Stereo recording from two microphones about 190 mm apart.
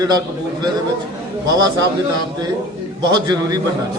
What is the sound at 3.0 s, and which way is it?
Speech, 20° right (ahead or behind).